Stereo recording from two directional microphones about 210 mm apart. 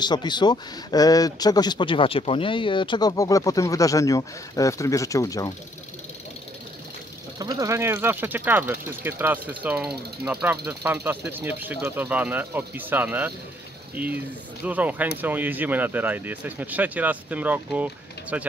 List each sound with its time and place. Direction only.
0.0 s speech: 20° left (ahead or behind)
7.3 s speech: 20° right (ahead or behind)